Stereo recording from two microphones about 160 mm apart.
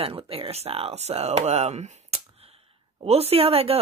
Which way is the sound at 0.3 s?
40° right (ahead or behind).